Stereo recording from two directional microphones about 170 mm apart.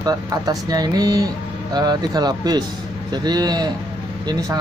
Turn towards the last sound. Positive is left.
turn(degrees=-20)  # may be behind; listen again after turning